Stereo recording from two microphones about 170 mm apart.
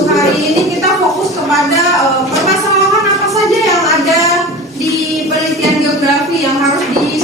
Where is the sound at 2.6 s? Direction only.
20° right (ahead or behind).